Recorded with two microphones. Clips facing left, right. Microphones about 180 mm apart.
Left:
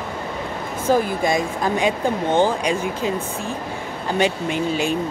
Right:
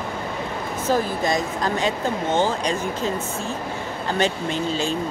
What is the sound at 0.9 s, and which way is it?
Speech, 15° left (ahead or behind).